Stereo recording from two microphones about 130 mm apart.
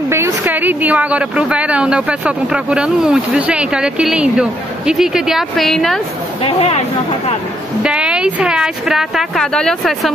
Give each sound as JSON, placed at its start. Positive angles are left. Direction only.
{"t": 0.1, "sound": "a woman's voice", "side_deg": -20}
{"t": 6.4, "sound": "speech", "side_deg": 50}
{"t": 7.8, "sound": "a woman's voice", "side_deg": -10}